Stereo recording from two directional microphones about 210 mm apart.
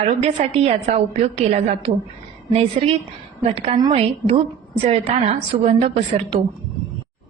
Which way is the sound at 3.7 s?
20° right (ahead or behind).